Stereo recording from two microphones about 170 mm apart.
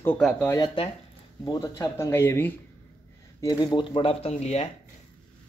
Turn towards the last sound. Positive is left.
turn(degrees=40)  # may be behind; listen again after turning